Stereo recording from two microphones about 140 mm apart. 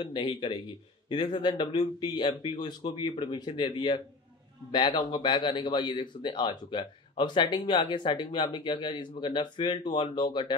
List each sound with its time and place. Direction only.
0.0 s speech: 35° left (ahead or behind)